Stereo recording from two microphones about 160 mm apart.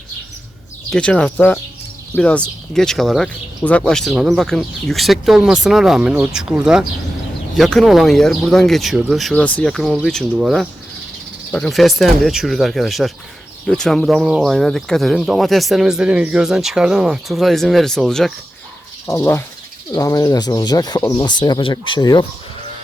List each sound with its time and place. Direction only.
0.9 s speech: 5° left (ahead or behind)
19.0 s speech: 15° left (ahead or behind)